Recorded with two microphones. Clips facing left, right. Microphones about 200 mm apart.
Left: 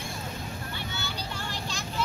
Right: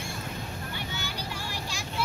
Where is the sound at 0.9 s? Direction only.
10° right (ahead or behind).